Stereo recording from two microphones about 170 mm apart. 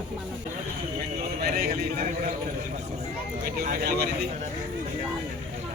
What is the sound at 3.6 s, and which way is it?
Speech, 55° right (ahead or behind).